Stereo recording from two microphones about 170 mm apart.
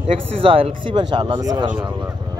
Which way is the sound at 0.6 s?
30° right (ahead or behind).